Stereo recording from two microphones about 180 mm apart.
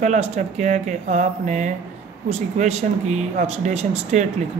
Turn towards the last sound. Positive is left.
turn(degrees=-40)  # may be behind; listen again after turning